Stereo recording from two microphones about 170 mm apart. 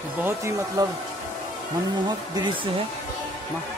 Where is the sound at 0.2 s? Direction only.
15° right (ahead or behind).